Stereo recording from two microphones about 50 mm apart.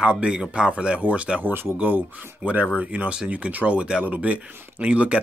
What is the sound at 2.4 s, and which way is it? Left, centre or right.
Speech, right.